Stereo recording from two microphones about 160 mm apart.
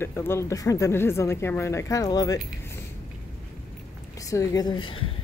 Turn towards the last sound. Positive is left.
turn(degrees=30)  # may be behind; listen again after turning